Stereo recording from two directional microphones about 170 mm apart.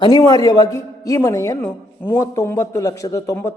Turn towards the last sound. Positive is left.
turn(degrees=15)  # may be behind; listen again after turning